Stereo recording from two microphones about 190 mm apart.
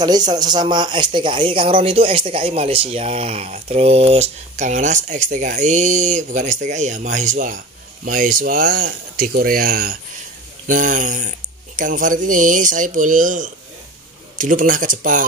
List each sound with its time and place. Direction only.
0.0 s speech: 20° right (ahead or behind); by 15.2 s 45° right (ahead or behind)